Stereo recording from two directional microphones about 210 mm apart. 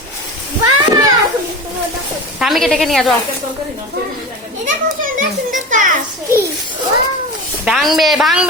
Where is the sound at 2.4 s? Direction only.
Centre (ahead or behind).